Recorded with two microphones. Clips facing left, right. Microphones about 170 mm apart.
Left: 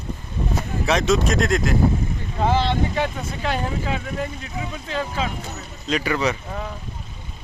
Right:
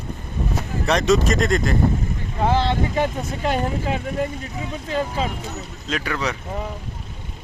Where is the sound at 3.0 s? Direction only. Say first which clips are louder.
Right 2 dB; 45° right (ahead or behind).